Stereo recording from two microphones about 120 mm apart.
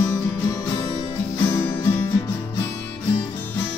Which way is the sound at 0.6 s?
35° left (ahead or behind).